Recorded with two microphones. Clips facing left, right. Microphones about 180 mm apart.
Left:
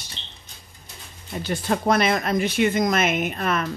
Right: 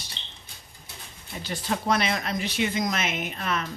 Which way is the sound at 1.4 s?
50° left (ahead or behind).